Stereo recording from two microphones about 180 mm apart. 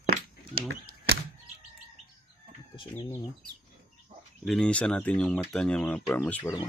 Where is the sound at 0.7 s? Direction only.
60° right (ahead or behind).